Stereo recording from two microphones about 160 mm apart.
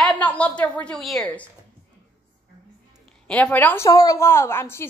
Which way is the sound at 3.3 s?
10° left (ahead or behind).